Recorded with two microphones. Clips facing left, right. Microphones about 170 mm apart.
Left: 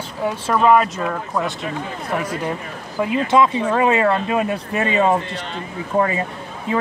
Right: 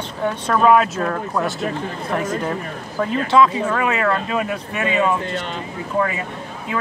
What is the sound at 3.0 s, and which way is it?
Speech, 15° left (ahead or behind).